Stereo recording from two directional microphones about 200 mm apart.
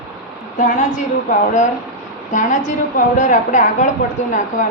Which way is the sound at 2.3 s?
40° left (ahead or behind).